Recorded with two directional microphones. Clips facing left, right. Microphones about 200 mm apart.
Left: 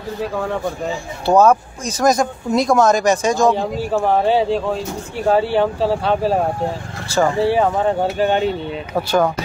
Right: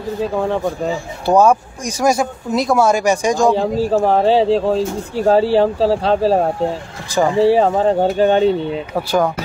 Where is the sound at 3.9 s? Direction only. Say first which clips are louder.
Right 1 dB; 35° right (ahead or behind).